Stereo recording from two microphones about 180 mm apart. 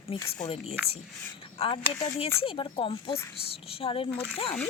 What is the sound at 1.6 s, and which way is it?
A woman's voice, 30° left (ahead or behind).